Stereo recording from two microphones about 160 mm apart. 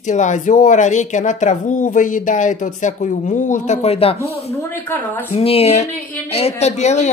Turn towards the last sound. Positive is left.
turn(degrees=45)  # may be behind; listen again after turning